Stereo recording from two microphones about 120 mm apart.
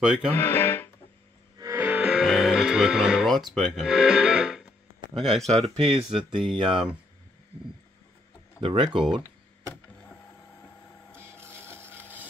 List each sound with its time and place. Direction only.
0.0 s speech: 5° right (ahead or behind)
0.3 s speech: 20° left (ahead or behind)
1.8 s music: 10° right (ahead or behind)
5.1 s speech: centre (ahead or behind)
5.5 s speech: 60° right (ahead or behind)
6.4 s speech: 45° right (ahead or behind)
8.5 s speech: 40° right (ahead or behind)
11.1 s printer: 20° right (ahead or behind)